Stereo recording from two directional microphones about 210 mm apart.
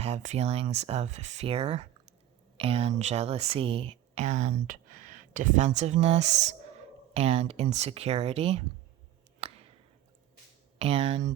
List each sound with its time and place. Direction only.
0.0 s speech: 35° right (ahead or behind)
9.4 s a sound: 30° right (ahead or behind)
10.8 s speech: 30° right (ahead or behind)